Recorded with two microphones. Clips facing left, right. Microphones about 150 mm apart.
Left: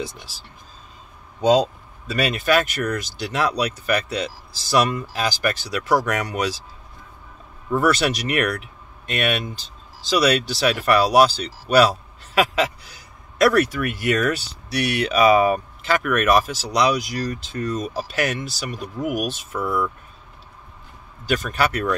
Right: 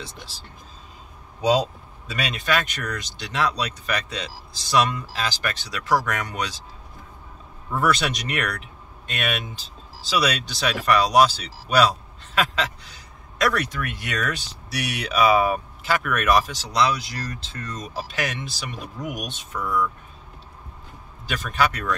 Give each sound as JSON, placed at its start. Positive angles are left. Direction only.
{"t": 2.0, "sound": "speech", "side_deg": 5}
{"t": 7.7, "sound": "speech", "side_deg": 0}
{"t": 21.3, "sound": "speech", "side_deg": 0}